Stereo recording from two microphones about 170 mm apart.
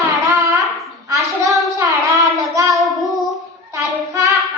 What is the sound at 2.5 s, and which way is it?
Child singing, 20° right (ahead or behind).